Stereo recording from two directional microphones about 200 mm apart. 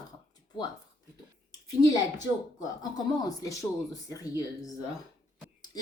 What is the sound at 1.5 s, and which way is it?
Speech, 20° left (ahead or behind).